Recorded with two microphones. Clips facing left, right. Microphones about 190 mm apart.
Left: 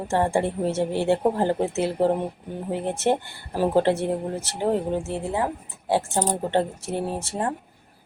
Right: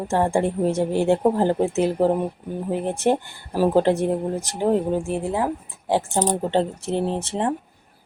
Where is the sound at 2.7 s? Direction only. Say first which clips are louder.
Right 2 dB; 15° right (ahead or behind).